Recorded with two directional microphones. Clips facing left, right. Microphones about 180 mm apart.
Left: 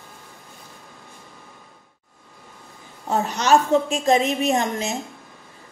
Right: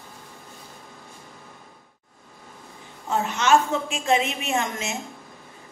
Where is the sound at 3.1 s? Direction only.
40° left (ahead or behind).